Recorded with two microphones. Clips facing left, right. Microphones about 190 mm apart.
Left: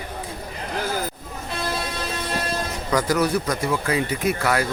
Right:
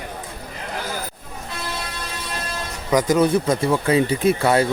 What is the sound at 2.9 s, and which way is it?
Speech, 25° right (ahead or behind).